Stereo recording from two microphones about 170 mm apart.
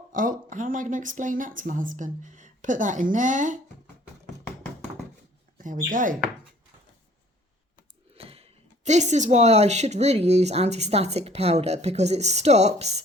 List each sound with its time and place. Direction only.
0.1 s speech: 50° right (ahead or behind)
5.5 s speech: 50° right (ahead or behind)
8.1 s speech: 35° right (ahead or behind)